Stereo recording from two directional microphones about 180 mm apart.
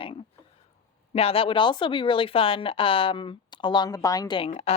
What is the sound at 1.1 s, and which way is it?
Speech, 30° left (ahead or behind).